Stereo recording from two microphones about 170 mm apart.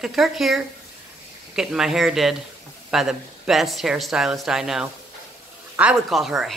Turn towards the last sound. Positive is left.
turn(degrees=0)  # may be behind; listen again after turning